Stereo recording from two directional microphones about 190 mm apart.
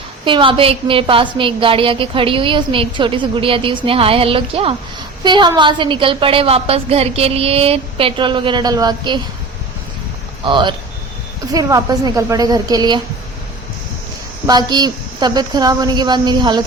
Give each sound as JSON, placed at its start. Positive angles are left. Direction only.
{"t": 0.3, "sound": "a woman's voice", "side_deg": -25}
{"t": 10.4, "sound": "a woman's voice", "side_deg": -25}
{"t": 14.4, "sound": "a woman's voice", "side_deg": -20}